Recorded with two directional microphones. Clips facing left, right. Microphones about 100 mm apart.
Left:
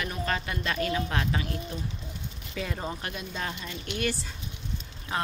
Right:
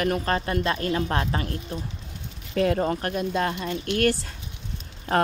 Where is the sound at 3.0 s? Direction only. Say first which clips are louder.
Right 10 dB; 50° right (ahead or behind).